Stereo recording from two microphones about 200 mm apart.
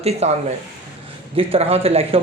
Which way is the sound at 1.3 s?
30° right (ahead or behind).